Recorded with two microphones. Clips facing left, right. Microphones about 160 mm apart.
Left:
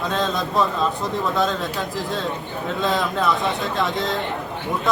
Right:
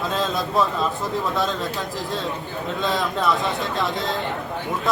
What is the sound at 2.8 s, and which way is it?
A man's voice, centre (ahead or behind).